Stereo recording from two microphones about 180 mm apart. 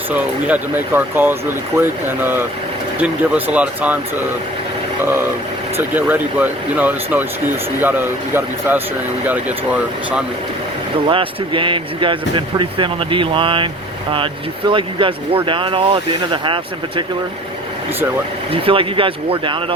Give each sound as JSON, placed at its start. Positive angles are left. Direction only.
{"t": 0.1, "sound": "speech", "side_deg": -10}
{"t": 5.7, "sound": "speech", "side_deg": -10}
{"t": 11.1, "sound": "speech", "side_deg": -30}
{"t": 18.5, "sound": "speech", "side_deg": -30}